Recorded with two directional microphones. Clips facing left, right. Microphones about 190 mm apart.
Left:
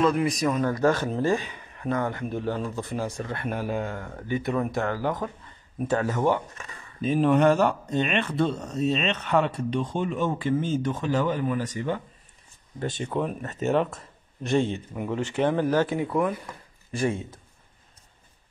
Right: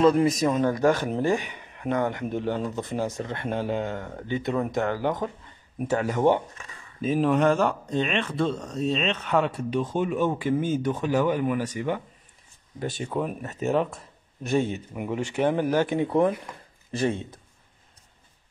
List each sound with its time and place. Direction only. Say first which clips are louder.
0.0 s speech: right 3 dB; 30° right (ahead or behind)
7.0 s speech: left 1 dB; centre (ahead or behind); by 17.2 s 30° right (ahead or behind)